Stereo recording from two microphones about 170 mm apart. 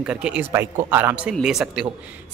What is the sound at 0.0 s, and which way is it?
A man's voice, 5° right (ahead or behind).